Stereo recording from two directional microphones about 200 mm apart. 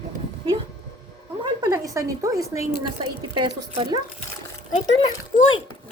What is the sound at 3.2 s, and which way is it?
Speech, 25° right (ahead or behind).